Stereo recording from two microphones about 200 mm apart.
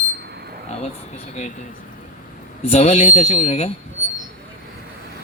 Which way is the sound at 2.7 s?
35° left (ahead or behind).